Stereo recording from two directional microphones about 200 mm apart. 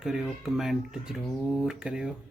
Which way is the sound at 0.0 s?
Centre (ahead or behind).